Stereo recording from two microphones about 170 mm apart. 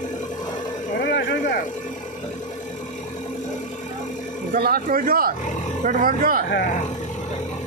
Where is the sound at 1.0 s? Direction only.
80° left.